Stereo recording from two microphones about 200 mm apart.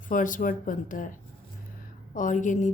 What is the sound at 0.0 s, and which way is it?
Speech, 40° left (ahead or behind).